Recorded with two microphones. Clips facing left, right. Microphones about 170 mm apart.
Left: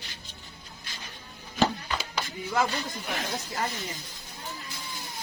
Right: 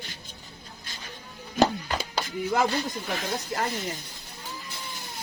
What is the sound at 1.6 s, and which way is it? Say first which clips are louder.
Music: right 3 dB; 40° right (ahead or behind).